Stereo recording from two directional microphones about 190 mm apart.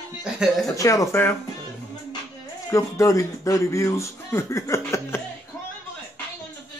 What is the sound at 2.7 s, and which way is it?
Speech, 15° left (ahead or behind).